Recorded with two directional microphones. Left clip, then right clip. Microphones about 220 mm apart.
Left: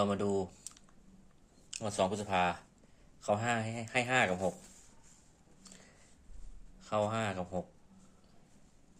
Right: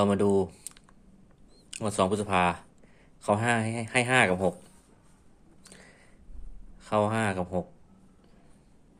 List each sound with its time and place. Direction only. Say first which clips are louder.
0.0 s a man's voice: right 8 dB; 20° right (ahead or behind)
5.6 s a sound: right 6 dB; 20° right (ahead or behind)
6.8 s a man's voice: right 7 dB; 20° right (ahead or behind)